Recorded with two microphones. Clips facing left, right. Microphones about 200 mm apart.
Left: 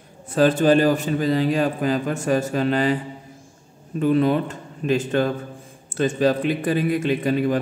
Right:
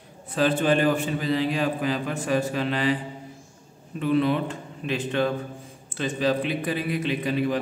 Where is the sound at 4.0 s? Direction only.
40° left (ahead or behind).